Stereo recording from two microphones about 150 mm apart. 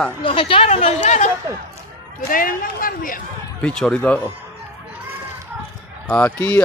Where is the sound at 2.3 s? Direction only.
70° left (ahead or behind).